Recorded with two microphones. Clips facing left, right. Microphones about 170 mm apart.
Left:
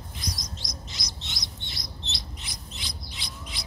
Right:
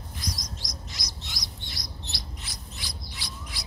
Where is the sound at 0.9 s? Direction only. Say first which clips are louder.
Even; 25° left (ahead or behind).